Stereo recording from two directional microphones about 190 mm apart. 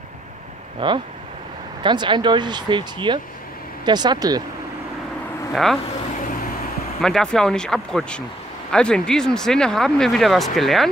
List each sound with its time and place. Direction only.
0.7 s speech: 25° right (ahead or behind)
5.5 s speech: centre (ahead or behind)
7.0 s speech: 5° left (ahead or behind)